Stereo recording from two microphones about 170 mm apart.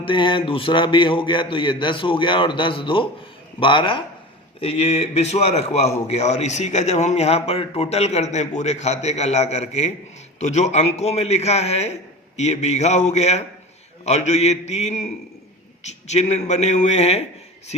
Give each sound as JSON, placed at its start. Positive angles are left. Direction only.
{"t": 0.0, "sound": "a man's voice", "side_deg": 30}